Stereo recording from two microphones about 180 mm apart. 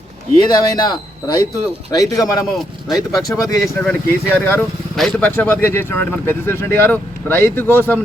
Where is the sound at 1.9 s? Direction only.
20° left (ahead or behind).